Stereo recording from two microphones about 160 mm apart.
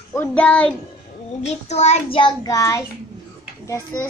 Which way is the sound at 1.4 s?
45° left (ahead or behind).